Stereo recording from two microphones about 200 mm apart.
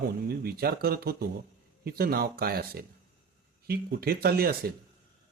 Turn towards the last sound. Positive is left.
turn(degrees=-50)  # may be behind; listen again after turning